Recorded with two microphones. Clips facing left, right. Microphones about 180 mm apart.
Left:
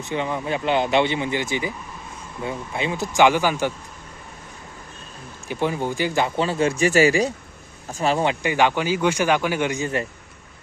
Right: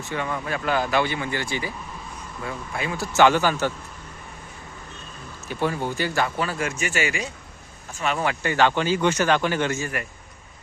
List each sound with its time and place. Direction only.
0.0 s a man's voice: 20° left (ahead or behind)
5.5 s speech: 15° left (ahead or behind); by 8.3 s 35° left (ahead or behind)
8.3 s a man's voice: 15° left (ahead or behind)